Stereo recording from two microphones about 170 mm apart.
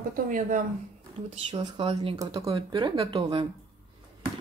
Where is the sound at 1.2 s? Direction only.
30° right (ahead or behind).